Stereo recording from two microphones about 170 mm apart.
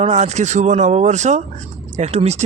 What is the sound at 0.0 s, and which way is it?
Speech, 40° right (ahead or behind).